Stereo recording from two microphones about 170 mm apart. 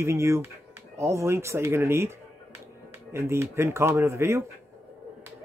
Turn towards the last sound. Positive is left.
turn(degrees=-15)  # may be behind; listen again after turning